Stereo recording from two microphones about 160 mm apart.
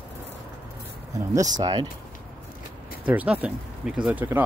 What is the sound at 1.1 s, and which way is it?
Speech, 20° right (ahead or behind).